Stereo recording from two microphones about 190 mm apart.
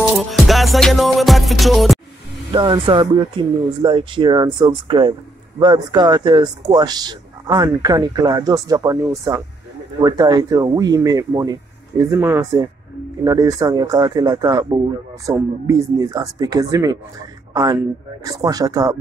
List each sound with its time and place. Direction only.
0.3 s music: centre (ahead or behind)
2.5 s speech: 25° right (ahead or behind)